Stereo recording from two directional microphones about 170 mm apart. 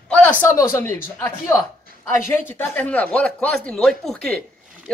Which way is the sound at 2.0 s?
10° left (ahead or behind).